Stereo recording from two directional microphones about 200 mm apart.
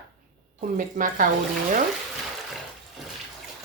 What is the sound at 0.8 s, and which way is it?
Speech, 40° right (ahead or behind).